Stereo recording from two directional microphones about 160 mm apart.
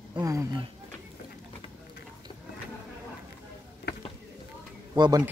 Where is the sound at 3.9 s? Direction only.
90° left.